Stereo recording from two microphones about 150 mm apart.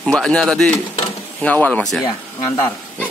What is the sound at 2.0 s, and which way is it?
Speech, 20° left (ahead or behind).